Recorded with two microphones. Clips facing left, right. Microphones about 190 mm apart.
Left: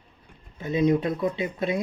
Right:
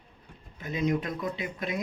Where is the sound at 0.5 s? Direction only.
25° left (ahead or behind).